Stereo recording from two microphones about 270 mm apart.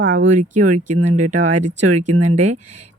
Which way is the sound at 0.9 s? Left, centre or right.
Right.